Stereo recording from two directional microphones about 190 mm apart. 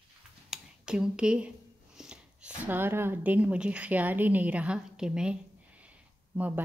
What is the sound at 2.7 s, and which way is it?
A woman's voice, 10° right (ahead or behind).